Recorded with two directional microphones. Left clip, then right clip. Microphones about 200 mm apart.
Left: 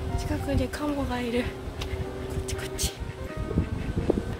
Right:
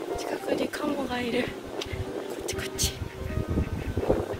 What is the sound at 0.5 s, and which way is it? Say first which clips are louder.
Speech: right 1 dB; 10° left (ahead or behind).